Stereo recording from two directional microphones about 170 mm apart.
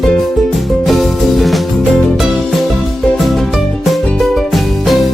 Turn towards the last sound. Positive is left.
turn(degrees=0)  # may be behind; listen again after turning